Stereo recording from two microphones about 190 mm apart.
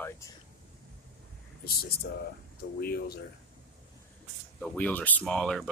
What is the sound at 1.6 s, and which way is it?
Speech, 55° left (ahead or behind).